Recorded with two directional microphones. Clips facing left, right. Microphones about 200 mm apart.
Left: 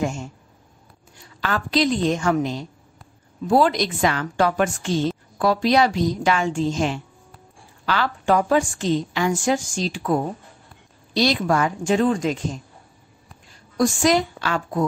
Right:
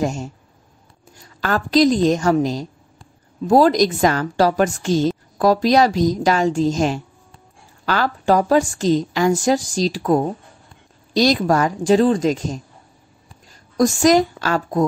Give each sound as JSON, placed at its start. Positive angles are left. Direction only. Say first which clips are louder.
{"t": 0.0, "sound": "a woman's voice", "louder": "right 3 dB", "side_deg": -40}